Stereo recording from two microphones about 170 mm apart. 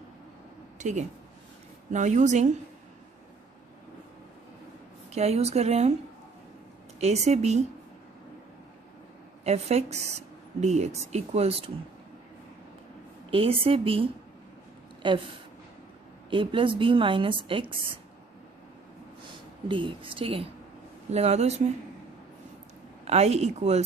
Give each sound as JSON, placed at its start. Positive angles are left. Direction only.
{"t": 0.7, "sound": "a woman's voice", "side_deg": -45}
{"t": 5.1, "sound": "speech", "side_deg": -40}
{"t": 7.0, "sound": "speech", "side_deg": -40}
{"t": 9.4, "sound": "speech", "side_deg": -40}
{"t": 13.3, "sound": "speech", "side_deg": -30}
{"t": 19.7, "sound": "speech", "side_deg": -30}
{"t": 23.0, "sound": "speech", "side_deg": -40}